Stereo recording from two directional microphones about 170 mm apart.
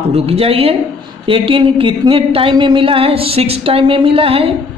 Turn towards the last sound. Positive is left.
turn(degrees=-35)  # may be behind; listen again after turning